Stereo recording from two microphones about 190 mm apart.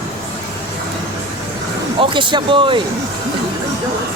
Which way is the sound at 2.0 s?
25° right (ahead or behind).